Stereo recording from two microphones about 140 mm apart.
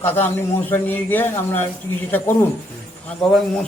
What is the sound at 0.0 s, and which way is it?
A man's voice, 15° left (ahead or behind).